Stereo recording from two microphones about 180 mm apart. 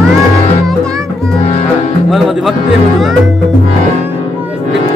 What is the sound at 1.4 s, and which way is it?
Music, 35° left (ahead or behind).